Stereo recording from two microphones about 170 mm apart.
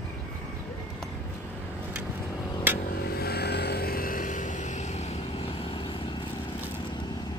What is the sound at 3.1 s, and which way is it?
Vehicle, 70° left (ahead or behind).